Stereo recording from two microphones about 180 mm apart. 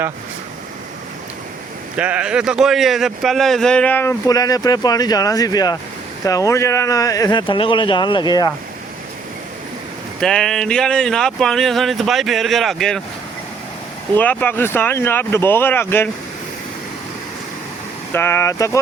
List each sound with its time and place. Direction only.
2.0 s speech: 5° right (ahead or behind); by 8.5 s 20° left (ahead or behind)
10.2 s speech: 5° left (ahead or behind)
14.2 s speech: 10° left (ahead or behind)
18.1 s speech: 15° left (ahead or behind)